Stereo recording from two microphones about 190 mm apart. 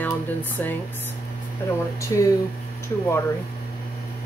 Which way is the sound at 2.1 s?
20° left (ahead or behind).